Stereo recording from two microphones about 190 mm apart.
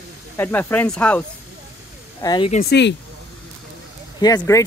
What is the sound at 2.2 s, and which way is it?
Speech, 25° left (ahead or behind).